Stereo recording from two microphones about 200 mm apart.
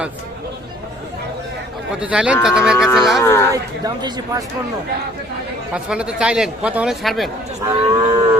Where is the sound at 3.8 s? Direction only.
20° right (ahead or behind).